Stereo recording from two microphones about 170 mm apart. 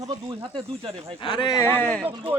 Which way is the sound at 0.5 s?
35° right (ahead or behind).